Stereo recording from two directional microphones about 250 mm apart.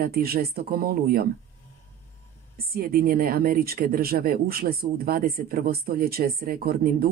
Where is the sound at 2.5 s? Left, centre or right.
Right.